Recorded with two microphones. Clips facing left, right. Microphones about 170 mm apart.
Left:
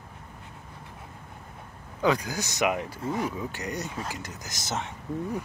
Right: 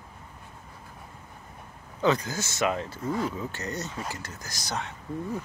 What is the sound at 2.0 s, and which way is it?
Speech, 10° left (ahead or behind).